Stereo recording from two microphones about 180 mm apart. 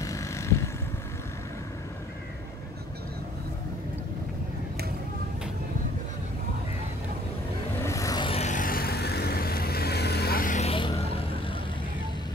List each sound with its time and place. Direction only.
0.0 s vehicle: 15° left (ahead or behind)
7.8 s music: 15° left (ahead or behind)
8.3 s vehicle: 40° left (ahead or behind)